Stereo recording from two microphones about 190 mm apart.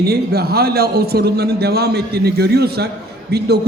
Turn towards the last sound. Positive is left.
turn(degrees=-55)  # may be behind; listen again after turning